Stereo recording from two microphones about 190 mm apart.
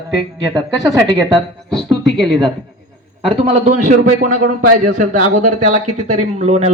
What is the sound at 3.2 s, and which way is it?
Speech, 35° right (ahead or behind).